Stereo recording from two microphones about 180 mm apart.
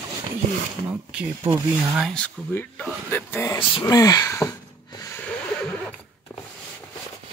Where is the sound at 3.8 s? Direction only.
20° left (ahead or behind).